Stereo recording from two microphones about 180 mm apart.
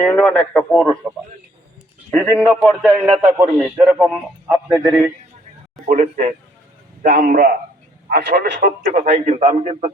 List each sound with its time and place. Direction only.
0.0 s a man's voice: 5° left (ahead or behind)
2.0 s a man's voice: 5° left (ahead or behind)
3.2 s a man's voice: 15° right (ahead or behind)
5.8 s a man's voice: 45° right (ahead or behind)
8.9 s a man's voice: 40° right (ahead or behind)